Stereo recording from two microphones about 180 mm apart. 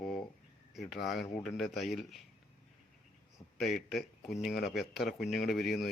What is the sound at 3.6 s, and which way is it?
Speech, centre (ahead or behind).